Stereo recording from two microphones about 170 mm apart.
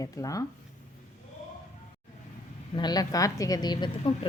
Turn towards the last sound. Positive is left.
turn(degrees=25)  # may be behind; listen again after turning